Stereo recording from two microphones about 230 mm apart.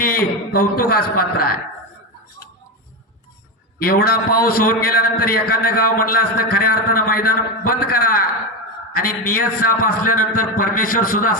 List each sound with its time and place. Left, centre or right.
0.0 s a man's voice: left
3.8 s a man's voice: left